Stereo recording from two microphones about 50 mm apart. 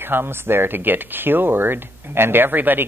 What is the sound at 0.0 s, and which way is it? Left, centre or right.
Speech, right.